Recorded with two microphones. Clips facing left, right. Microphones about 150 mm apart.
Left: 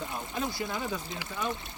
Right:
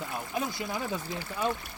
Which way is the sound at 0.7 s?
20° left (ahead or behind).